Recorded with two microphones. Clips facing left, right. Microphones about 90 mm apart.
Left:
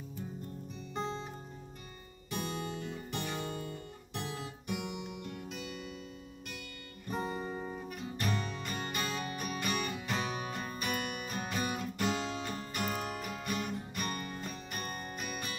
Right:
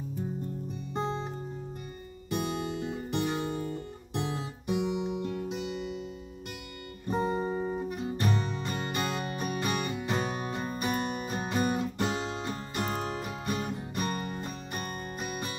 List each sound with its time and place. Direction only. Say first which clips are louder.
2.3 s guitar: right 6 dB; 20° right (ahead or behind)
7.1 s guitar: right 8 dB; 25° right (ahead or behind)